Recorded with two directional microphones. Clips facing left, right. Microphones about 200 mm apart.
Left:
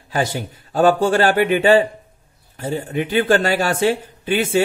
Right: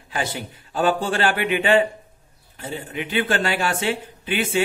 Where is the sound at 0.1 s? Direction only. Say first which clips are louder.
Left 6 dB; 40° left (ahead or behind).